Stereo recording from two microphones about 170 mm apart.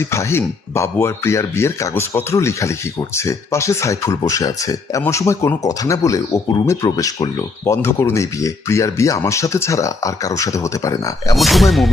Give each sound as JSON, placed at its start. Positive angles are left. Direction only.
{"t": 0.0, "sound": "speech", "side_deg": 15}
{"t": 11.3, "sound": "speech", "side_deg": 0}